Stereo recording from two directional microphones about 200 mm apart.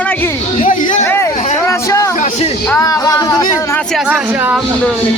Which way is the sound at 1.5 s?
15° left (ahead or behind).